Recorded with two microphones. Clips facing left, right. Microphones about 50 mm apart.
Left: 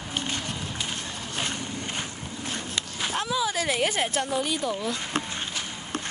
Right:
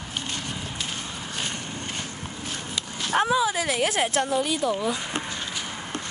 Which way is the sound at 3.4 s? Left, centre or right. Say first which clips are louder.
Right 3 dB; centre.